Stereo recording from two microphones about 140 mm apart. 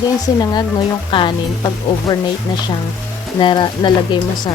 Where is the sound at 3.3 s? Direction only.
30° left (ahead or behind).